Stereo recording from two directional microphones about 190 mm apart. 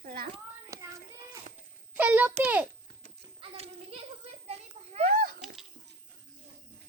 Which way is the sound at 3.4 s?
30° right (ahead or behind).